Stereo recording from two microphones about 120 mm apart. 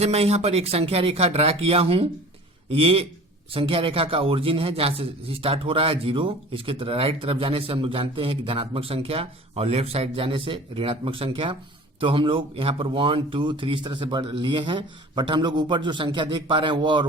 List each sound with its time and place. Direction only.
0.0 s a man's voice: 60° right (ahead or behind); by 17.1 s 40° right (ahead or behind)